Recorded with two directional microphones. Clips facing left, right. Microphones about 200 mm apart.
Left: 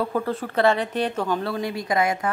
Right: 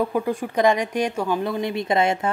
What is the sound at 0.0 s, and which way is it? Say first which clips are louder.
A woman's voice: right 2 dB; 15° right (ahead or behind).